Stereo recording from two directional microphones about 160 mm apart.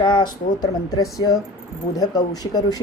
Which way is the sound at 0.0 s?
25° left (ahead or behind).